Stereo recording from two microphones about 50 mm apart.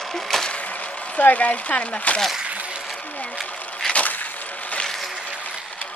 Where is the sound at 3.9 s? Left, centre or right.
Left.